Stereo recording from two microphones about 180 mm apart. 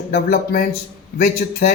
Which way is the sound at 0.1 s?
60° left (ahead or behind).